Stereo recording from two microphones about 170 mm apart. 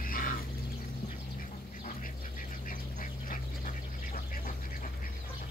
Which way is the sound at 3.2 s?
55° left (ahead or behind).